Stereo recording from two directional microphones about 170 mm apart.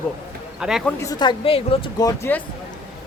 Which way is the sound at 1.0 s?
25° left (ahead or behind).